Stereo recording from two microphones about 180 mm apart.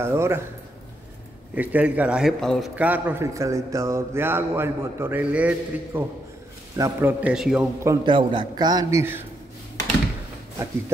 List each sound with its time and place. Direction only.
0.0 s a man's voice: 15° right (ahead or behind)
1.5 s a man's voice: 10° right (ahead or behind)
7.8 s a man's voice: 20° right (ahead or behind)